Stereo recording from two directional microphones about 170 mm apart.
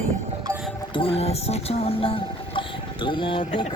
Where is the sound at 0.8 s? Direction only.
30° left (ahead or behind).